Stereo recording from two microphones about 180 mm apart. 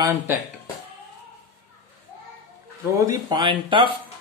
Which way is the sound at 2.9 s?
20° right (ahead or behind).